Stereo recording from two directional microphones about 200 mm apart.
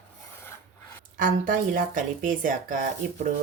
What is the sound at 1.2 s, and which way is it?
A woman's voice, 45° right (ahead or behind).